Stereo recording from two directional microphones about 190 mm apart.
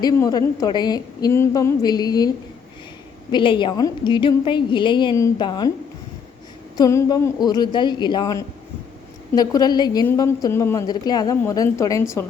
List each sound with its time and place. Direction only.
0.0 s a woman's voice: 20° left (ahead or behind)
3.3 s a woman's voice: 25° left (ahead or behind)
6.7 s a woman's voice: 20° left (ahead or behind)